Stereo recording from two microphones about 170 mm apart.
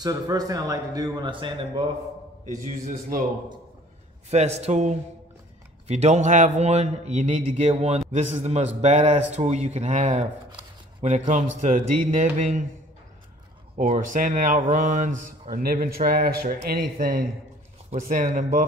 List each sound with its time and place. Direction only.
0.0 s a man's voice: 25° right (ahead or behind)
2.6 s speech: 55° right (ahead or behind)
4.3 s a man's voice: 40° right (ahead or behind)
13.7 s speech: 50° right (ahead or behind)